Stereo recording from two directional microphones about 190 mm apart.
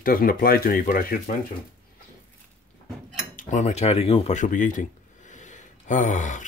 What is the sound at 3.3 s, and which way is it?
Speech, 40° left (ahead or behind).